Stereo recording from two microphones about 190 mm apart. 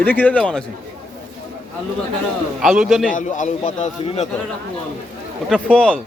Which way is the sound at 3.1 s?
40° left (ahead or behind).